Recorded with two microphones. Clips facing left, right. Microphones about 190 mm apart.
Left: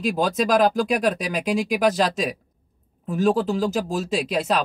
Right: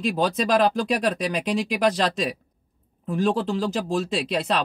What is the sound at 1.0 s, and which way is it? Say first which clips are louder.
Speech: left 1 dB; 5° left (ahead or behind).